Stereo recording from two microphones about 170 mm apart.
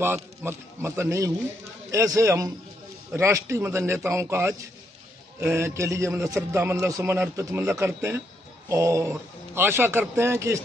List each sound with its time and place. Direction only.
0.0 s a man's voice: 15° right (ahead or behind)